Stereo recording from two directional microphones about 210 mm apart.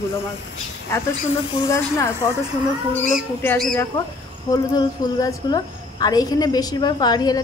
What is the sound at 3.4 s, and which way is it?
A woman's voice, 10° left (ahead or behind).